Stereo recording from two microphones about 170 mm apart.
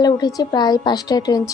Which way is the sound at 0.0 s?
20° left (ahead or behind).